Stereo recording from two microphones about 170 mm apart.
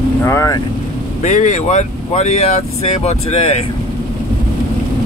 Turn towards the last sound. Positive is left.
turn(degrees=40)  # may be behind; listen again after turning